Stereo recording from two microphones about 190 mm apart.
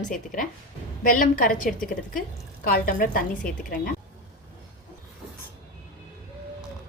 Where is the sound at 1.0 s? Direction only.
45° left (ahead or behind).